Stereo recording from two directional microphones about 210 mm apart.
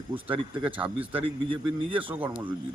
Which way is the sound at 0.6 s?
5° right (ahead or behind).